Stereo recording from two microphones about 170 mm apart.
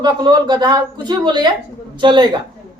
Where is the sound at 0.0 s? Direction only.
25° right (ahead or behind).